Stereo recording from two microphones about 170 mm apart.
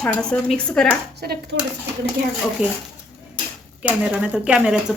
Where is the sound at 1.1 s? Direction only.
75° right (ahead or behind).